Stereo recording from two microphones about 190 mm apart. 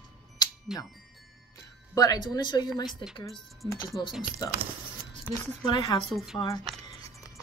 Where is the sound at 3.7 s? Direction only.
15° left (ahead or behind).